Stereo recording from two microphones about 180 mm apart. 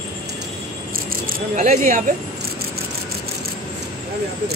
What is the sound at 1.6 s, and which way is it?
Speech, 45° right (ahead or behind).